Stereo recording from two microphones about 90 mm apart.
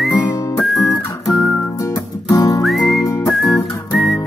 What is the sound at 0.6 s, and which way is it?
Guitar, centre (ahead or behind).